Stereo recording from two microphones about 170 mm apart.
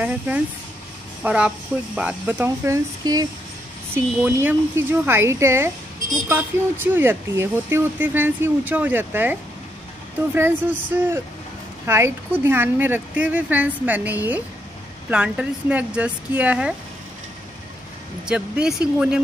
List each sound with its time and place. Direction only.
0.0 s speech: 10° right (ahead or behind)
18.2 s speech: 5° right (ahead or behind)